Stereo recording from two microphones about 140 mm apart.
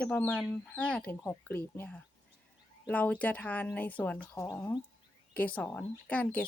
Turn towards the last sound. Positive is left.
turn(degrees=10)  # may be behind; listen again after turning